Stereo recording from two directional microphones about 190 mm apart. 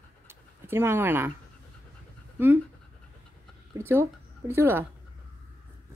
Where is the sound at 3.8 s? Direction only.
15° right (ahead or behind).